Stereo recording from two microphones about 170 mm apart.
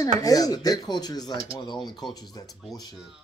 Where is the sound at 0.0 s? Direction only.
20° left (ahead or behind).